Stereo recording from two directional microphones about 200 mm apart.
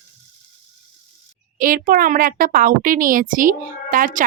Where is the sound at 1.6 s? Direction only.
45° right (ahead or behind).